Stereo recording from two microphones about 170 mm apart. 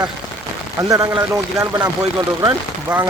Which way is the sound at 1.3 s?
20° right (ahead or behind).